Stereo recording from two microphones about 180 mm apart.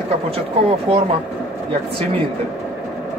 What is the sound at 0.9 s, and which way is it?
Speech, 30° right (ahead or behind).